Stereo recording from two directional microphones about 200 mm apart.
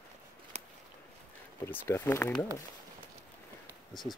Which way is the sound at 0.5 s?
35° right (ahead or behind).